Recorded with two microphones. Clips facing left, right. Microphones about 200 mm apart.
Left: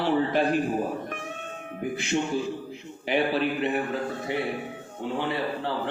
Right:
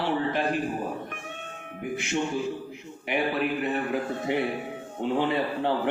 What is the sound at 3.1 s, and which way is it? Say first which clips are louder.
Speech: left 2 dB; 30° left (ahead or behind).